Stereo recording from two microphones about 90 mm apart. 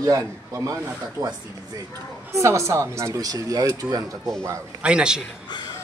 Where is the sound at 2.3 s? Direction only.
30° right (ahead or behind).